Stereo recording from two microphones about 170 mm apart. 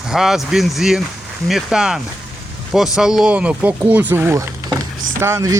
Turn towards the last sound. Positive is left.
turn(degrees=-15)  # may be behind; listen again after turning